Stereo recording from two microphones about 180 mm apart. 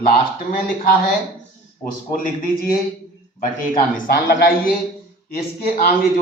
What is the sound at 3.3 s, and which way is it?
A man's voice, 50° left (ahead or behind).